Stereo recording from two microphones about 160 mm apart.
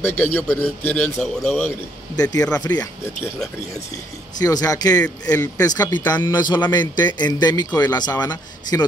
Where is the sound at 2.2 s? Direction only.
25° left (ahead or behind).